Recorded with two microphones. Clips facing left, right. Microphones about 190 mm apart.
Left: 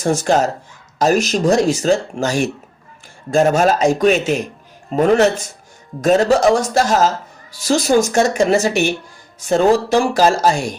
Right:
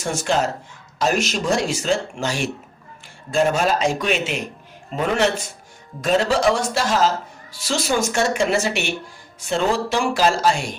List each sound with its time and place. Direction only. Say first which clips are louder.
0.0 s a man's voice: left 6 dB; 40° left (ahead or behind)